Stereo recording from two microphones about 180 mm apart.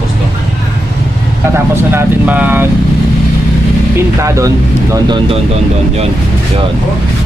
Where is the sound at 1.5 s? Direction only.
10° right (ahead or behind).